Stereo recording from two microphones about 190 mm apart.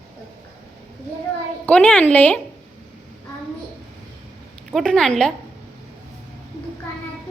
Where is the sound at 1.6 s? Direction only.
10° left (ahead or behind).